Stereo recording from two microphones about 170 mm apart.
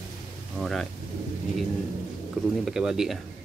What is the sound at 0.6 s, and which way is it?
Cutlery, centre (ahead or behind).